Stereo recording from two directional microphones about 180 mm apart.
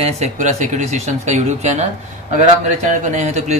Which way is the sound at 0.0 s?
40° right (ahead or behind).